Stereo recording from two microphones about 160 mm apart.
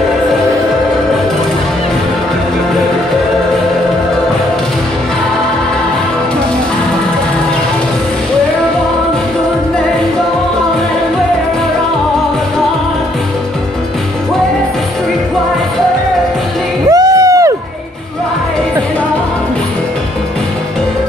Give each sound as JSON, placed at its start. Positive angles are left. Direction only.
{"t": 16.9, "sound": "music", "side_deg": -20}